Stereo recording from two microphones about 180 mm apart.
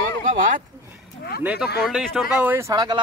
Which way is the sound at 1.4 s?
5° right (ahead or behind).